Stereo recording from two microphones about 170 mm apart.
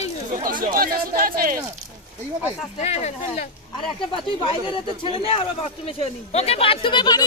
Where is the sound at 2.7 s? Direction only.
40° left (ahead or behind).